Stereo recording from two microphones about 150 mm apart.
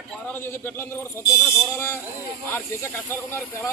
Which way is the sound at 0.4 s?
15° left (ahead or behind).